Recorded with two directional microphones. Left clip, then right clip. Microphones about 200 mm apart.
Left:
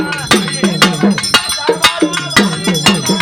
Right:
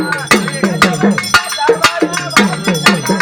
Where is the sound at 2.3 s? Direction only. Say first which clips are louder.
Right 2 dB; 50° left (ahead or behind).